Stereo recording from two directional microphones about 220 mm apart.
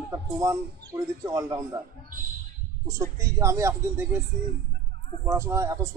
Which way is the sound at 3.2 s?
15° right (ahead or behind).